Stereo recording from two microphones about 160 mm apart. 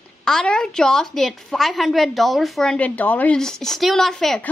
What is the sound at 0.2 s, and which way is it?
A woman's voice, 5° left (ahead or behind).